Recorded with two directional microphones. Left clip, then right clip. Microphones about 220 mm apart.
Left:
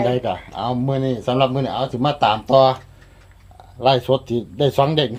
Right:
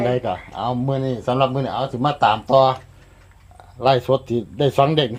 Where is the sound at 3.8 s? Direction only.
15° right (ahead or behind).